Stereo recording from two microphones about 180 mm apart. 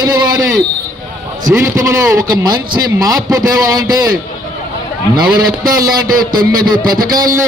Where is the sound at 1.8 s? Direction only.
15° right (ahead or behind).